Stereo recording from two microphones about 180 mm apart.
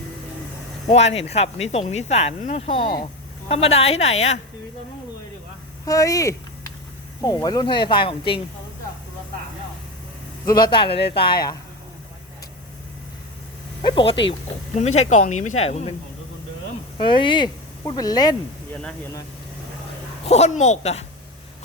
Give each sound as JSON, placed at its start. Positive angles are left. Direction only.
{"t": 0.9, "sound": "speech", "side_deg": 35}
{"t": 5.8, "sound": "speech", "side_deg": 20}
{"t": 10.4, "sound": "speech", "side_deg": 25}
{"t": 13.8, "sound": "speech", "side_deg": 30}
{"t": 14.8, "sound": "speech", "side_deg": 40}
{"t": 17.0, "sound": "speech", "side_deg": 25}
{"t": 20.2, "sound": "speech", "side_deg": 35}